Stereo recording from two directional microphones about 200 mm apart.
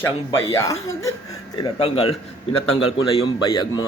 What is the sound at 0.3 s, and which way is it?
Speech, 15° left (ahead or behind).